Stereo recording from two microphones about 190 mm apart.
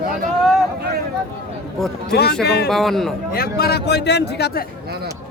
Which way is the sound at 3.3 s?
55° left (ahead or behind).